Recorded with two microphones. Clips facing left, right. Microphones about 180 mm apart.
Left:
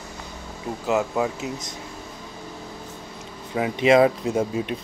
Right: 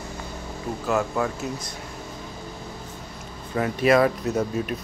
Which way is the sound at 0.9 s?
15° left (ahead or behind).